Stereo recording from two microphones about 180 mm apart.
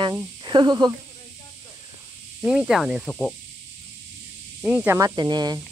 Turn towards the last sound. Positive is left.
turn(degrees=-20)  # may be behind; listen again after turning